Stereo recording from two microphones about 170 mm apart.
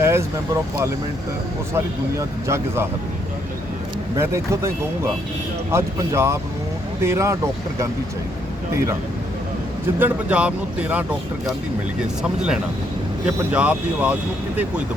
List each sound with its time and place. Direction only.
0.0 s speech: 15° right (ahead or behind)
4.2 s speech: 15° right (ahead or behind)
10.0 s speech: 10° right (ahead or behind)
13.2 s speech: 5° right (ahead or behind)